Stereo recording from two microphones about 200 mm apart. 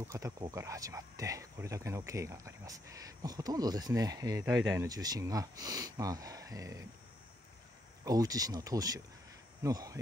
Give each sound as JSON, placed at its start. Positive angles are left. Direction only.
{"t": 0.1, "sound": "speech", "side_deg": -20}
{"t": 8.0, "sound": "speech", "side_deg": -20}